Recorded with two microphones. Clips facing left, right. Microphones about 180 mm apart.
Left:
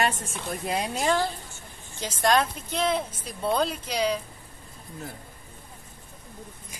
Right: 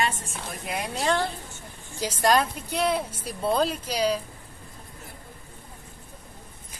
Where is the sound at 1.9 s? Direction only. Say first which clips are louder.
Right 1 dB; 5° right (ahead or behind).